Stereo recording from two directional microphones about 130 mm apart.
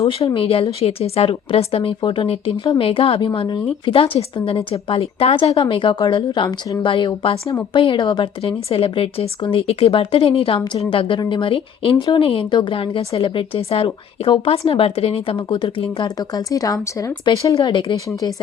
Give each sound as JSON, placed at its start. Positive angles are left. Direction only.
{"t": 0.3, "sound": "a woman's voice", "side_deg": 45}